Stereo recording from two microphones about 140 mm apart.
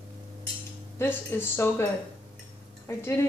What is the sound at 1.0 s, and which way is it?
A woman's voice, 15° left (ahead or behind).